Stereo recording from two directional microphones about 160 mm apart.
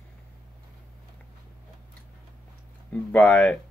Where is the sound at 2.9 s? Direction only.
10° left (ahead or behind).